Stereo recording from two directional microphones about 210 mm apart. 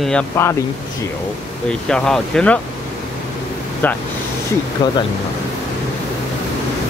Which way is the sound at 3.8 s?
10° left (ahead or behind).